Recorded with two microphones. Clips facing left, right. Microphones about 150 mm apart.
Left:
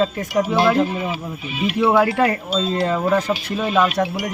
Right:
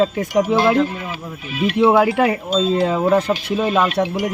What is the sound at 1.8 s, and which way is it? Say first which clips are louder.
Speech: right 2 dB; 5° right (ahead or behind).